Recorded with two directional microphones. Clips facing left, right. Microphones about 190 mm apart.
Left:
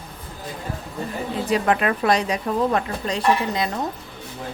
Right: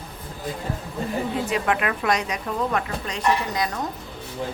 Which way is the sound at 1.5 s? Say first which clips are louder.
Left 4 dB; 35° left (ahead or behind).